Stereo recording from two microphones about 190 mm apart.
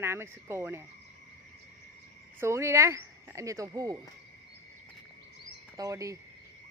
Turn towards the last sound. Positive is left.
turn(degrees=-15)  # may be behind; listen again after turning